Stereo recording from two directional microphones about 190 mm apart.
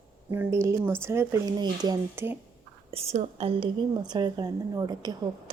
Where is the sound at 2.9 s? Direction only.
35° right (ahead or behind).